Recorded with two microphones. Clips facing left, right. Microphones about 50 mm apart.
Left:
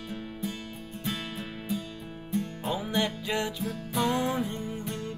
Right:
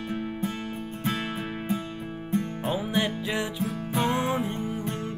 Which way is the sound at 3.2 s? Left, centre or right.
Centre.